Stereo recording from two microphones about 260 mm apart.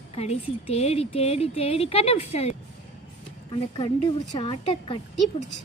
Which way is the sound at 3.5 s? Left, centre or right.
Left.